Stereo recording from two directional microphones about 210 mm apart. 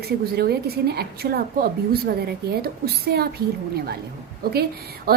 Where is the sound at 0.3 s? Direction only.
50° right (ahead or behind).